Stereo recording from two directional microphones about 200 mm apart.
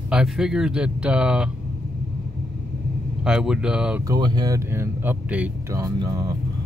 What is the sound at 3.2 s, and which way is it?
Speech, 5° right (ahead or behind).